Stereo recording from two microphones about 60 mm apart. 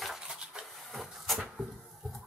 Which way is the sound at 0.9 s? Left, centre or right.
Centre.